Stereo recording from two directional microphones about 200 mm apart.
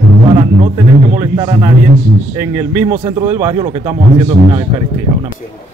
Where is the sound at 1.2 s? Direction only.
20° right (ahead or behind).